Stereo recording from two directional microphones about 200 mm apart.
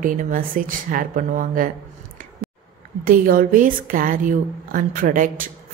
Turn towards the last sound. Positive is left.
turn(degrees=-40)  # may be behind; listen again after turning